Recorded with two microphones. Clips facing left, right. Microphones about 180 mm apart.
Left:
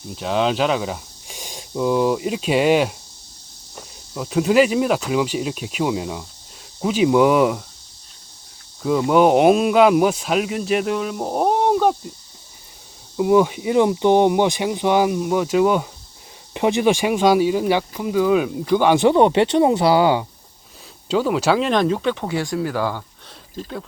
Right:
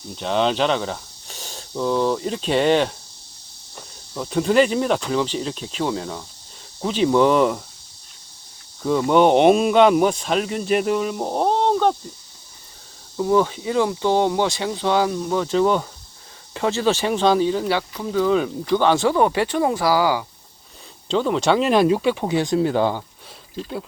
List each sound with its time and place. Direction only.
0.1 s speech: 5° left (ahead or behind)
8.8 s speech: 5° left (ahead or behind)
13.1 s speech: 15° left (ahead or behind)
21.1 s speech: 5° left (ahead or behind); by 23.0 s 20° right (ahead or behind)